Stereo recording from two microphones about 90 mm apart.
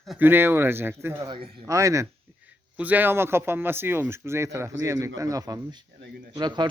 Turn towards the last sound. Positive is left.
turn(degrees=-55)  # may be behind; listen again after turning